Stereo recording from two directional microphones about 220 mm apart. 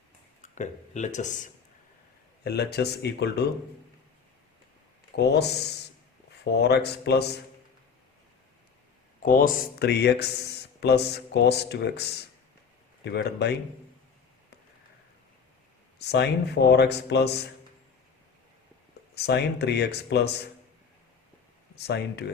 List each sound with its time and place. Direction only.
0.5 s speech: 35° left (ahead or behind)
2.4 s speech: 50° left (ahead or behind)
5.1 s speech: 50° left (ahead or behind)
9.2 s speech: 40° left (ahead or behind)
16.0 s speech: 50° left (ahead or behind)
19.1 s speech: 50° left (ahead or behind)
21.8 s speech: 50° left (ahead or behind)